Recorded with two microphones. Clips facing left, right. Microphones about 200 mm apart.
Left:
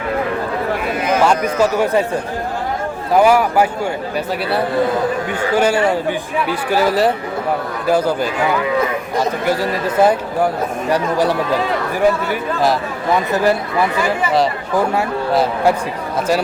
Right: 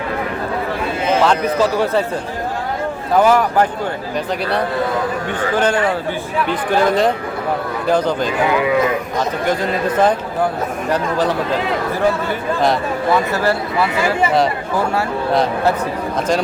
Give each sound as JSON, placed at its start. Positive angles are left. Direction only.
{"t": 1.8, "sound": "speech", "side_deg": 15}
{"t": 3.1, "sound": "speech", "side_deg": 10}
{"t": 5.4, "sound": "speech", "side_deg": 10}
{"t": 15.3, "sound": "a man's voice", "side_deg": 5}